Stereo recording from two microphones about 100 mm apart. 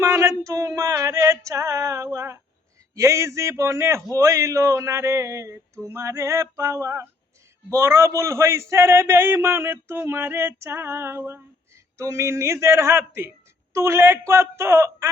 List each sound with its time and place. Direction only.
0.2 s female singing: 30° right (ahead or behind)
2.9 s a man's voice: 30° right (ahead or behind)